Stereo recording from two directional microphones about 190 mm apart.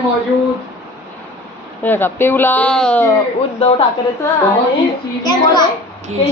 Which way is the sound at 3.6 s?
30° left (ahead or behind).